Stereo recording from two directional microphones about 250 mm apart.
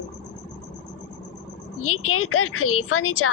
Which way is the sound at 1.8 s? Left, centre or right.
Left.